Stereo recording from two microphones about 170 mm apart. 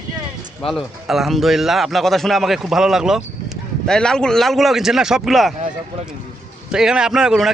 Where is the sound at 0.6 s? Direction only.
Centre (ahead or behind).